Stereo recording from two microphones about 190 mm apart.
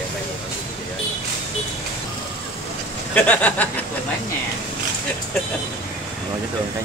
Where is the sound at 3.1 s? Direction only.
5° left (ahead or behind).